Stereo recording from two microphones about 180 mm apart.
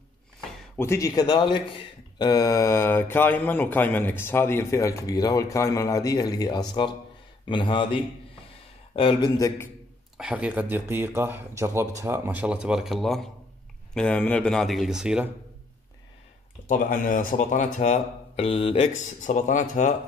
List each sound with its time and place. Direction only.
0.7 s speech: 15° left (ahead or behind)
10.1 s speech: 5° right (ahead or behind)
16.6 s speech: 50° left (ahead or behind)